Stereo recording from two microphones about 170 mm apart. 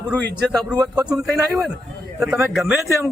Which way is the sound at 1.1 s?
Centre (ahead or behind).